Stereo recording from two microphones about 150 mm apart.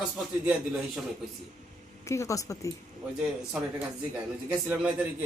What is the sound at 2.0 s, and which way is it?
Speech, 20° left (ahead or behind).